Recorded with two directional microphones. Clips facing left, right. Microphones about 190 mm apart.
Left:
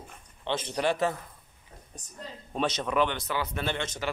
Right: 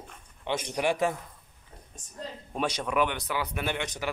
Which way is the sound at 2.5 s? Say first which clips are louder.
Left 1 dB; 10° right (ahead or behind).